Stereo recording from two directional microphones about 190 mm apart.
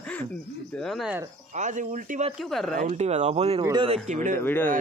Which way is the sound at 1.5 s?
40° right (ahead or behind).